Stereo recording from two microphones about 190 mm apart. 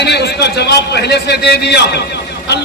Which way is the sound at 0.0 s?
60° left (ahead or behind).